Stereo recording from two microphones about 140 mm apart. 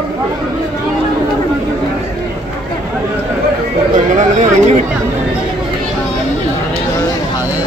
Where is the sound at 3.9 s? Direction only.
60° right (ahead or behind).